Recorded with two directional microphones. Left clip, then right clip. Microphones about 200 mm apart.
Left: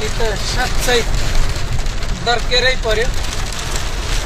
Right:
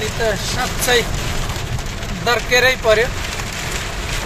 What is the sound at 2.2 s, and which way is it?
Speech, 10° right (ahead or behind).